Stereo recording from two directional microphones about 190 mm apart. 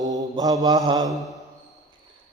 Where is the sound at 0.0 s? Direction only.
20° right (ahead or behind).